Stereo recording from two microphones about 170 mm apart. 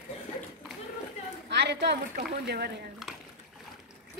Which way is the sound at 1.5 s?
85° right.